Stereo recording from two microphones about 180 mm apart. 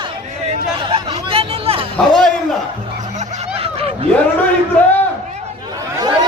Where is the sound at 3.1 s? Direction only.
40° right (ahead or behind).